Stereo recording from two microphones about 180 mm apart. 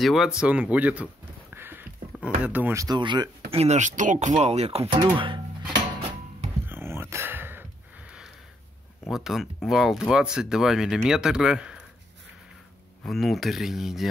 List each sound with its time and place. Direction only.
0.0 s speech: centre (ahead or behind)
1.5 s a sound: 10° right (ahead or behind)
3.5 s speech: 40° right (ahead or behind)
6.7 s a sound: 15° right (ahead or behind)
9.1 s speech: centre (ahead or behind)
13.0 s speech: centre (ahead or behind)